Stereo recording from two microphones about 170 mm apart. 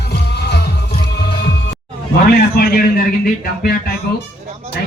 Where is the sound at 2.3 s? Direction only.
65° left (ahead or behind).